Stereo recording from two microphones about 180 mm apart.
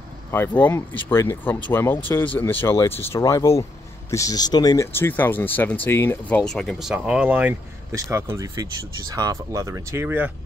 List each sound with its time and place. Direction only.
0.3 s speech: 10° left (ahead or behind); by 10.3 s 10° right (ahead or behind)